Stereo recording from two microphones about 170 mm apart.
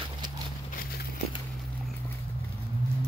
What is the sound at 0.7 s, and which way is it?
Horse, 60° left (ahead or behind).